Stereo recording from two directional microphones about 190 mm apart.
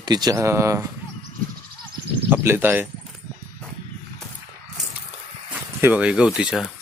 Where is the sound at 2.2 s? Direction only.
10° right (ahead or behind).